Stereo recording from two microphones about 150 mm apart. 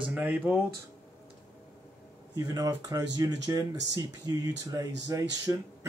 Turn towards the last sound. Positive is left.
turn(degrees=-20)  # may be behind; listen again after turning